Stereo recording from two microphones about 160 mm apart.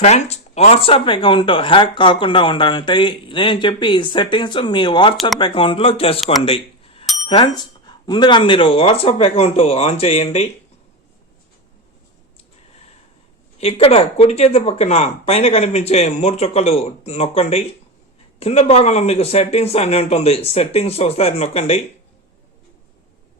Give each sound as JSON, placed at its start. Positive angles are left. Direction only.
{"t": 0.0, "sound": "speech", "side_deg": 45}
{"t": 6.1, "sound": "speech", "side_deg": 0}
{"t": 6.4, "sound": "a sound", "side_deg": 35}
{"t": 7.3, "sound": "speech", "side_deg": 30}
{"t": 13.6, "sound": "speech", "side_deg": 40}